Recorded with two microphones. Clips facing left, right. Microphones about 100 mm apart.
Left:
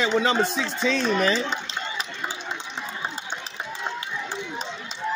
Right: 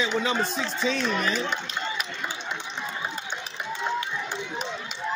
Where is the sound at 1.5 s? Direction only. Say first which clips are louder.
Even; 30° left (ahead or behind).